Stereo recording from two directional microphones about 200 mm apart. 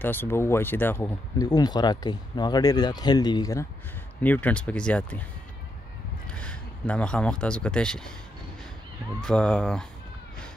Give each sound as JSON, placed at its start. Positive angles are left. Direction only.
{"t": 0.0, "sound": "speech", "side_deg": 10}
{"t": 4.2, "sound": "speech", "side_deg": 10}
{"t": 6.4, "sound": "speech", "side_deg": 5}
{"t": 9.2, "sound": "speech", "side_deg": 5}